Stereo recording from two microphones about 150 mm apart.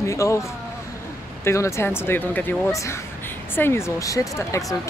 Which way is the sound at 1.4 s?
20° left (ahead or behind).